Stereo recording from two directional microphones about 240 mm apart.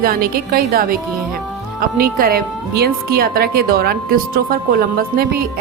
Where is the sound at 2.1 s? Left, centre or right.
Right.